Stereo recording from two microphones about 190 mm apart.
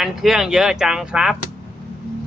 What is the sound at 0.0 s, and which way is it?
Speech, 5° right (ahead or behind).